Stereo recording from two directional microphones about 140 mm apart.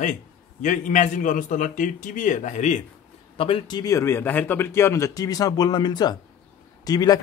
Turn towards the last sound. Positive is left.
turn(degrees=25)  # may be behind; listen again after turning